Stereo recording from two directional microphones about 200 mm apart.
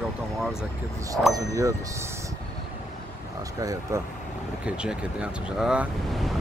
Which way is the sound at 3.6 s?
15° right (ahead or behind).